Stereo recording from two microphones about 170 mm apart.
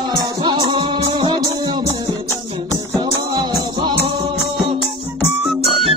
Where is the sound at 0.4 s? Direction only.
30° right (ahead or behind).